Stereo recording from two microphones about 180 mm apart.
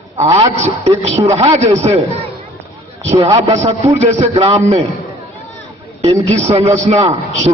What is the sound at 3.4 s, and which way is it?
A man's voice, 35° right (ahead or behind).